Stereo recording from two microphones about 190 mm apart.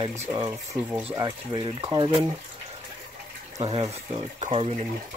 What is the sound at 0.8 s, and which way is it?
Speech, 15° right (ahead or behind).